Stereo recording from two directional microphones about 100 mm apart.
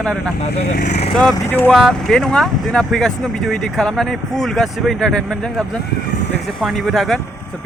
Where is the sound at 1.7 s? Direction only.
Centre (ahead or behind).